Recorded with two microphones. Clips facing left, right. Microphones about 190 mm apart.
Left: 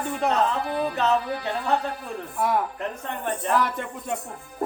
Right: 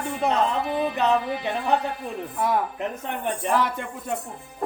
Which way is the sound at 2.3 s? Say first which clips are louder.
Even; centre (ahead or behind).